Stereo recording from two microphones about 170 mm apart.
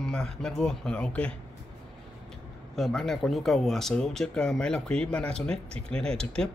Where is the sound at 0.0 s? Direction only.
5° left (ahead or behind).